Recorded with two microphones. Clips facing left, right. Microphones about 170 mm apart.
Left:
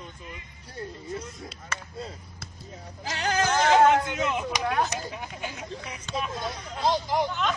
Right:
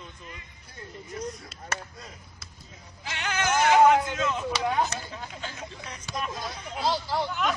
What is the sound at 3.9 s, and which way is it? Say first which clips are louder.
Speech: even; 20° left (ahead or behind).